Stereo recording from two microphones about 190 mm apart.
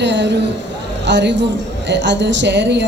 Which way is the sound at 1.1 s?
65° right (ahead or behind).